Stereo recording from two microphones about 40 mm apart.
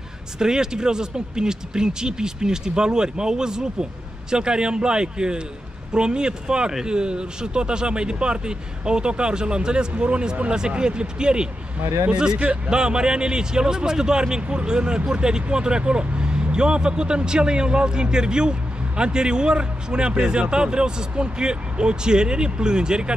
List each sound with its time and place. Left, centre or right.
0.4 s a man's voice: centre